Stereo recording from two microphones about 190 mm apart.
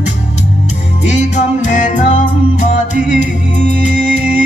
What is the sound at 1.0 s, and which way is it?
Music, 40° left (ahead or behind).